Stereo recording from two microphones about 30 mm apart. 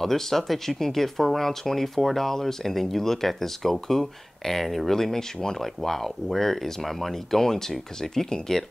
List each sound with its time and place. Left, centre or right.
0.0 s speech: centre